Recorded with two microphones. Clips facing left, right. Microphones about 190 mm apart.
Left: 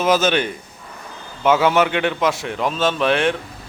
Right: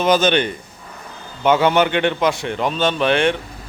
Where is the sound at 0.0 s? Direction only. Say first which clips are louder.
Right 1 dB; 5° left (ahead or behind).